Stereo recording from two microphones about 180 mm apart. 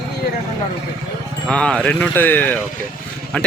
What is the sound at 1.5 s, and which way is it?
Speech, 5° left (ahead or behind).